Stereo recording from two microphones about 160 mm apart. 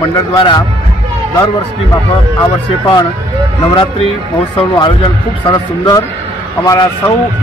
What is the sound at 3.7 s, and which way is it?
A man's voice, 30° left (ahead or behind).